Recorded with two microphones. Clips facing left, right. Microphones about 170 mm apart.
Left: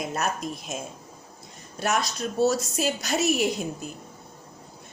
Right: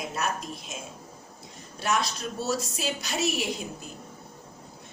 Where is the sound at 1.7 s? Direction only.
45° left (ahead or behind).